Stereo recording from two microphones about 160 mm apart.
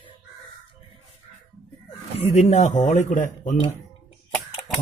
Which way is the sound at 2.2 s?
40° left (ahead or behind).